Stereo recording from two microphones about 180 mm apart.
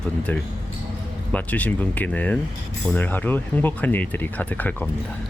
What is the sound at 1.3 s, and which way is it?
Speech, 10° left (ahead or behind).